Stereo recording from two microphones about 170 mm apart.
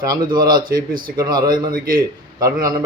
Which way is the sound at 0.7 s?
55° right (ahead or behind).